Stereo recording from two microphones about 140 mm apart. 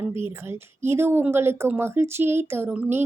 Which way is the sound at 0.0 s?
15° right (ahead or behind).